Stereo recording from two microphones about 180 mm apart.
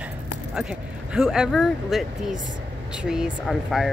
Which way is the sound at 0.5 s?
5° right (ahead or behind).